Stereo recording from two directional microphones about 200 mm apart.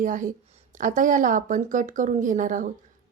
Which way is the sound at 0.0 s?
40° right (ahead or behind).